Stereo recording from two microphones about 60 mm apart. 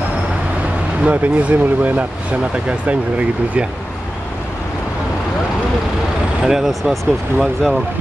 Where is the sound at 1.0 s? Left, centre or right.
Right.